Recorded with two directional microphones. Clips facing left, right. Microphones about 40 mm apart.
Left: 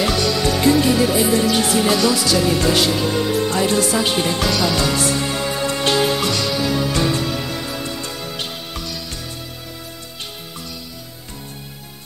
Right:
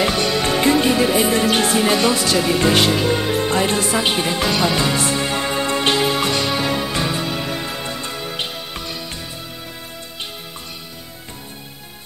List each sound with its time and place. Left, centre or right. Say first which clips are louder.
0.0 s music: even; right
6.2 s music: right 1 dB; right
7.0 s music: left 2 dB; centre
7.4 s music: right 1 dB; right